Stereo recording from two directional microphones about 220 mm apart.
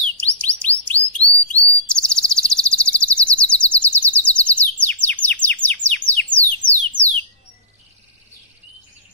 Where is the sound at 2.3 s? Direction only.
5° left (ahead or behind).